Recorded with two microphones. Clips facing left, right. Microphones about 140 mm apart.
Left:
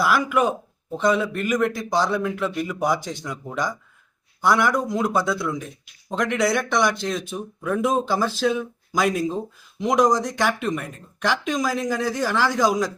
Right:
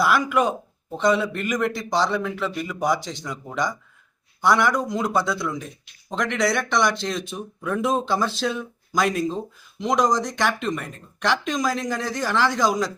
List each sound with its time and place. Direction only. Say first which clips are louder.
0.0 s a man's voice: even; centre (ahead or behind)